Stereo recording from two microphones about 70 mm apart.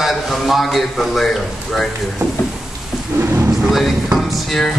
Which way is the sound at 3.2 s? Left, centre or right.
Right.